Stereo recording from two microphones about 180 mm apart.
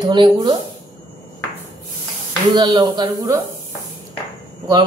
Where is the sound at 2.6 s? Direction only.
25° right (ahead or behind).